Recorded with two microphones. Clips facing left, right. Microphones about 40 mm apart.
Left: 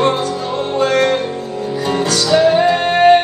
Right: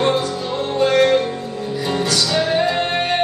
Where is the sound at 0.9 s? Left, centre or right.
Left.